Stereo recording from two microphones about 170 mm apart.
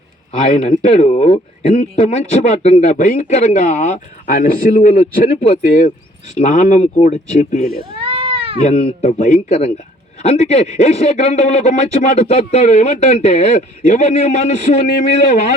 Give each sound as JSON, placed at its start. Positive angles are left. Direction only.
{"t": 0.8, "sound": "speech", "side_deg": 45}
{"t": 8.1, "sound": "cat", "side_deg": -35}
{"t": 8.6, "sound": "a man's voice", "side_deg": 40}